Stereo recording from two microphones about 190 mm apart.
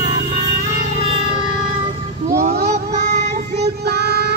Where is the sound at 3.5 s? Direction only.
60° right (ahead or behind).